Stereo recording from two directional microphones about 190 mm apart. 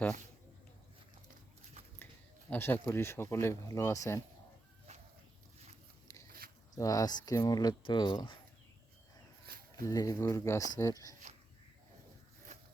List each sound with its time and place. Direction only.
2.5 s speech: 10° left (ahead or behind)
6.2 s a sound: 50° right (ahead or behind)
6.7 s speech: 20° left (ahead or behind)
9.8 s speech: 20° left (ahead or behind)